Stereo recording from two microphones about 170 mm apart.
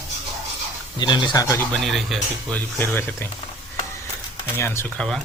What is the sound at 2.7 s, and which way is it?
Speech, 15° left (ahead or behind).